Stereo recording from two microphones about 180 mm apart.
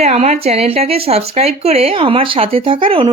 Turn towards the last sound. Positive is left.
turn(degrees=-30)  # may be behind; listen again after turning